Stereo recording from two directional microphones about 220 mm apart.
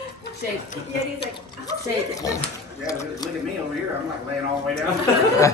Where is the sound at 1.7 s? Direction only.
15° left (ahead or behind).